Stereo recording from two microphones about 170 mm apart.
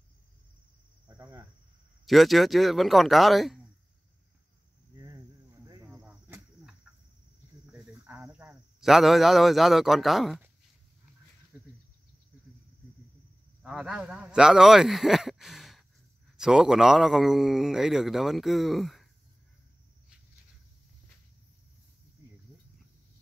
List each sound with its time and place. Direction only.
1.1 s speech: 15° right (ahead or behind)
2.0 s a man's voice: centre (ahead or behind)
4.9 s a sound: 20° right (ahead or behind)
5.9 s cricket: 10° right (ahead or behind)
7.6 s a sound: 10° right (ahead or behind)
13.6 s a man's voice: 5° right (ahead or behind)